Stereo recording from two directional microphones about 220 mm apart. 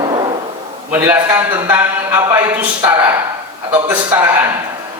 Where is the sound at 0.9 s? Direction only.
10° right (ahead or behind).